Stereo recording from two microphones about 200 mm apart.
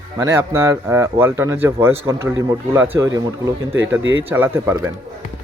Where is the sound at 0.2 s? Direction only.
15° right (ahead or behind).